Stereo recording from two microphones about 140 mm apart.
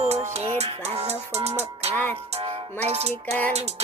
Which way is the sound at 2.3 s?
45° right (ahead or behind).